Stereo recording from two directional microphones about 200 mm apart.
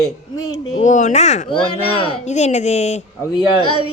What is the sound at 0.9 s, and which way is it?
Speech, 35° left (ahead or behind).